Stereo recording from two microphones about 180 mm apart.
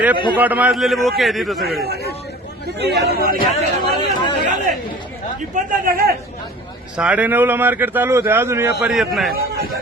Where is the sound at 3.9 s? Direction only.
25° left (ahead or behind).